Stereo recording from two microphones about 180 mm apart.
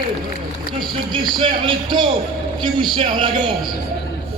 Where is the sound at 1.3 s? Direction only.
25° right (ahead or behind).